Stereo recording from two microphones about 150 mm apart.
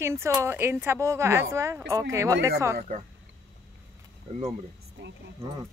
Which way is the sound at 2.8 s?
55° right (ahead or behind).